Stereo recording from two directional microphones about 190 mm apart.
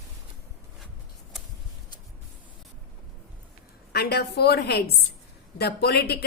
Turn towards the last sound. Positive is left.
turn(degrees=60)  # may be behind; listen again after turning